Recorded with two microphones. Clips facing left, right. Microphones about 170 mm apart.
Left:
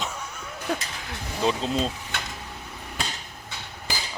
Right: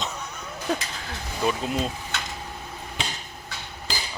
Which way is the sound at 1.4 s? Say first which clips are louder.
Left 1 dB; 20° left (ahead or behind).